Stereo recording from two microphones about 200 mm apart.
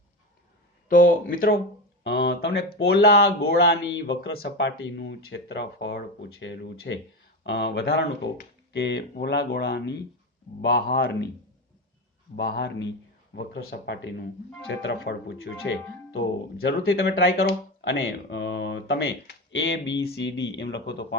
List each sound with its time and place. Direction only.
0.9 s speech: 45° left (ahead or behind)
2.0 s speech: 60° left (ahead or behind)
12.4 s speech: 55° left (ahead or behind)
15.5 s speech: 45° left (ahead or behind)
16.1 s speech: 60° left (ahead or behind)